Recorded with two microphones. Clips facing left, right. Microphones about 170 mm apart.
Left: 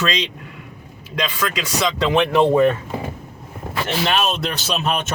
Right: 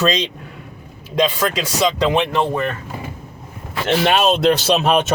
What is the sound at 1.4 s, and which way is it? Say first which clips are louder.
Speech: right 4 dB; 35° right (ahead or behind).